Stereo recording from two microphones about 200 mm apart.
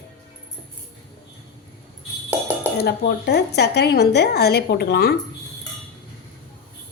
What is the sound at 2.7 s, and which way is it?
Speech, 55° left (ahead or behind).